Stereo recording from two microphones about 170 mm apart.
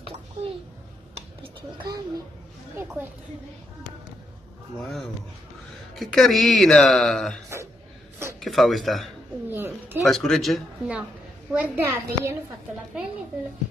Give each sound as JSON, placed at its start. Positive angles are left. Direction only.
{"t": 1.4, "sound": "a sound", "side_deg": -30}
{"t": 2.8, "sound": "a child's voice", "side_deg": -15}
{"t": 5.9, "sound": "speech", "side_deg": 0}
{"t": 8.4, "sound": "speech", "side_deg": 0}
{"t": 9.5, "sound": "speech", "side_deg": -10}
{"t": 10.0, "sound": "speech", "side_deg": 0}
{"t": 11.6, "sound": "a child's voice", "side_deg": -15}